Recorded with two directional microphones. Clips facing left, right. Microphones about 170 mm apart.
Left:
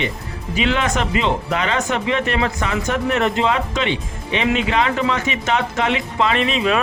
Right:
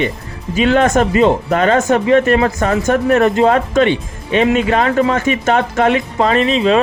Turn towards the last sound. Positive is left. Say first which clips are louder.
# right 6 dB
turn(degrees=-30)  # may be behind; listen again after turning